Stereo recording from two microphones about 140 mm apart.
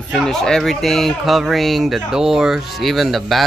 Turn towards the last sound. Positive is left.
turn(degrees=0)  # may be behind; listen again after turning